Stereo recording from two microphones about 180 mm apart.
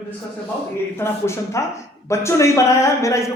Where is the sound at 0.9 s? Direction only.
15° left (ahead or behind).